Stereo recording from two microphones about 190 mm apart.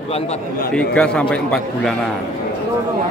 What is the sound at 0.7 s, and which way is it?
A man's voice, 5° left (ahead or behind).